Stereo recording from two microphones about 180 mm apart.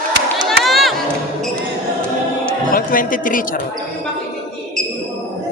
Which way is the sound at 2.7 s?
50° left (ahead or behind).